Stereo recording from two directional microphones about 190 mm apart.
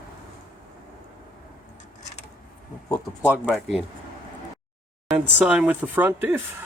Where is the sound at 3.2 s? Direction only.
5° right (ahead or behind).